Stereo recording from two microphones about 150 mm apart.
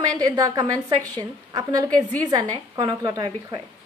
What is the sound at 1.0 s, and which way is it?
Speech, 15° left (ahead or behind).